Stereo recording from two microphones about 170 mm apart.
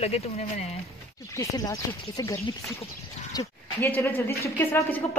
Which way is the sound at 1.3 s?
20° left (ahead or behind).